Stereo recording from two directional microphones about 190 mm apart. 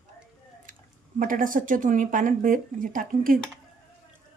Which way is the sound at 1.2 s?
45° right (ahead or behind).